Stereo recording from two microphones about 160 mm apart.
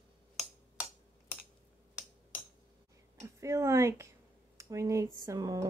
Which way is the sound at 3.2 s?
20° right (ahead or behind).